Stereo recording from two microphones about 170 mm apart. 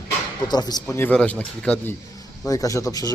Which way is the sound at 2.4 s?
20° left (ahead or behind).